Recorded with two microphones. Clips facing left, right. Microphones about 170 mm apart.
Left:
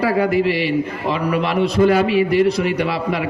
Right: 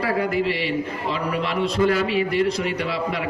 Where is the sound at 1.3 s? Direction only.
60° left (ahead or behind).